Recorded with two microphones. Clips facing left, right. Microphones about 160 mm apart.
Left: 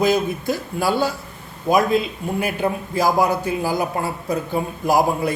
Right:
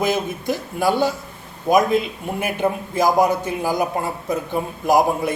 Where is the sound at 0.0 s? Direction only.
20° right (ahead or behind).